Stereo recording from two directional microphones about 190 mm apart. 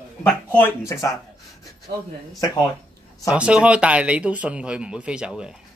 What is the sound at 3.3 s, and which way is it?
Speech, 5° right (ahead or behind).